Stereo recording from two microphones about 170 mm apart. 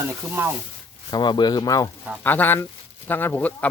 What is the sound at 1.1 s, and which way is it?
Speech, 25° left (ahead or behind).